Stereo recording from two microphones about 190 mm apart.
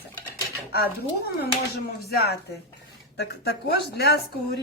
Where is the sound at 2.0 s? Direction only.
55° left (ahead or behind).